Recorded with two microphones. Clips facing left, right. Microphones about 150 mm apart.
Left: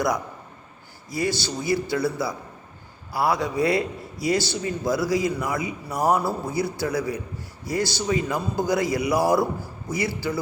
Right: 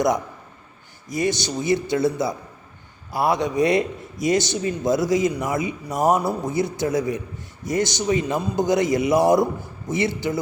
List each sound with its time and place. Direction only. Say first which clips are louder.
1.0 s speech: right 3 dB; 20° right (ahead or behind)